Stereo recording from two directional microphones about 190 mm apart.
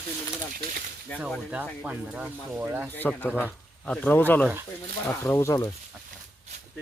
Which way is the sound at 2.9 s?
10° left (ahead or behind).